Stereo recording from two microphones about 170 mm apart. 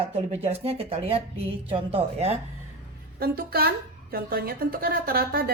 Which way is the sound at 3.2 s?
65° right (ahead or behind).